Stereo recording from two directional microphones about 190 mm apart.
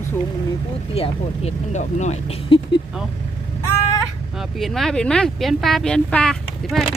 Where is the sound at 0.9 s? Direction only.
30° left (ahead or behind).